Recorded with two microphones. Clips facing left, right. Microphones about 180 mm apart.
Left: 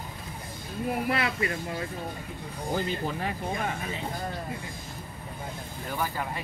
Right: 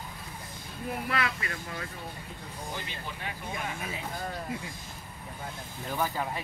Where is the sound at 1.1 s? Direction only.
30° left (ahead or behind).